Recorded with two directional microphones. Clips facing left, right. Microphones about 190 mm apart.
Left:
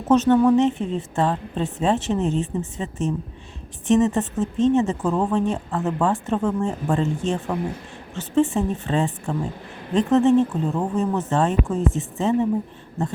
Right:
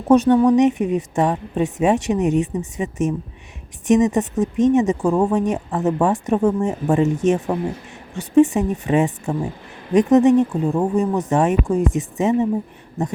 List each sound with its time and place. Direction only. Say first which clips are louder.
0.1 s speech: right 3 dB; 10° right (ahead or behind)